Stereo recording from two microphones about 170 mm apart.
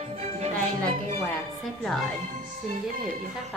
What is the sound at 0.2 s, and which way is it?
Music, 40° right (ahead or behind).